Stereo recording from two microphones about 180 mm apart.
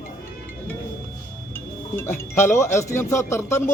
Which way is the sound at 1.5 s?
15° left (ahead or behind).